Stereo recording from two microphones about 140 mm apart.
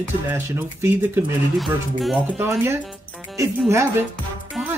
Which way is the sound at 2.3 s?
15° right (ahead or behind).